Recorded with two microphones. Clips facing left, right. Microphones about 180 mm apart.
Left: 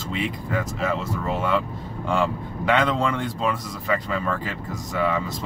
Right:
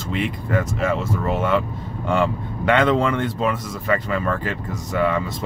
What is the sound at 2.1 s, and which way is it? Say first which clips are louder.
Speech: right 3 dB; 60° right (ahead or behind).